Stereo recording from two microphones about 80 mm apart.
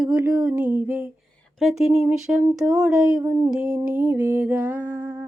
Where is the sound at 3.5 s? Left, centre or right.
Centre.